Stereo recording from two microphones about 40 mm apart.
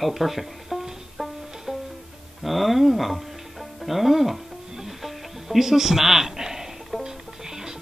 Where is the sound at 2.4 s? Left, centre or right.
Centre.